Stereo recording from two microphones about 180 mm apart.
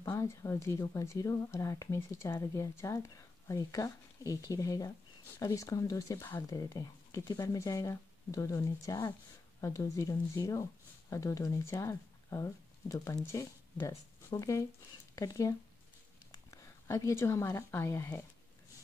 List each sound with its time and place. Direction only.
0.0 s a woman's voice: 15° left (ahead or behind)